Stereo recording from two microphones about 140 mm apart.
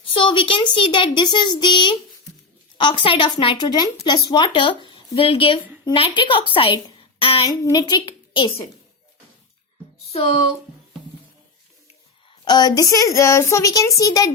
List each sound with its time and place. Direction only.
0.1 s a child's voice: 35° left (ahead or behind)
12.5 s a woman's voice: 30° left (ahead or behind)